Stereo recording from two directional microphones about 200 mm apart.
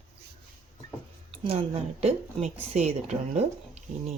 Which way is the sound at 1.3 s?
30° right (ahead or behind).